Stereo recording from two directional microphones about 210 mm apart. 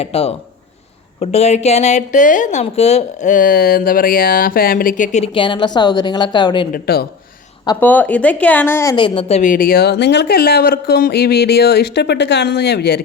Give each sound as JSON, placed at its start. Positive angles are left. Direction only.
{"t": 0.0, "sound": "speech", "side_deg": 30}
{"t": 6.7, "sound": "speech", "side_deg": 45}
{"t": 7.8, "sound": "a woman's voice", "side_deg": 10}
{"t": 9.4, "sound": "speech", "side_deg": 40}